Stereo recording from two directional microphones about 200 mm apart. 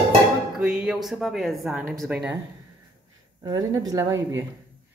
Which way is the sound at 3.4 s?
20° right (ahead or behind).